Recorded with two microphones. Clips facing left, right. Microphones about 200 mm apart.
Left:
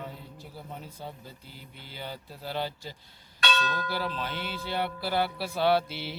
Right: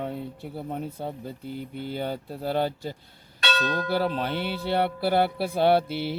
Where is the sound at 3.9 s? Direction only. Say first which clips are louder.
Right 7 dB; 55° right (ahead or behind).